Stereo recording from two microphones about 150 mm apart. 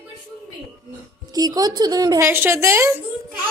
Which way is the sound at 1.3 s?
25° right (ahead or behind).